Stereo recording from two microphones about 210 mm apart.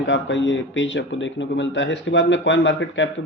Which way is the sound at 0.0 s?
60° left (ahead or behind).